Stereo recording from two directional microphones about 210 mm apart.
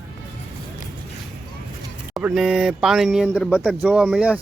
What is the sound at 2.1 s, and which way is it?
Speech, centre (ahead or behind).